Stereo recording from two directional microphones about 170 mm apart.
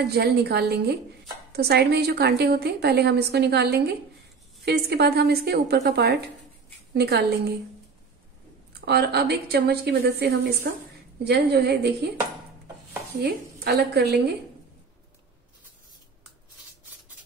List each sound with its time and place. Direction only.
0.1 s a woman's voice: 70° right (ahead or behind)
8.8 s a woman's voice: 70° right (ahead or behind)
13.2 s a woman's voice: 70° right (ahead or behind)